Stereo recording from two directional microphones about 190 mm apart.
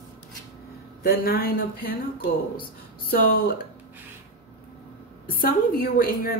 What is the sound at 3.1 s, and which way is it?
Speech, 50° left (ahead or behind).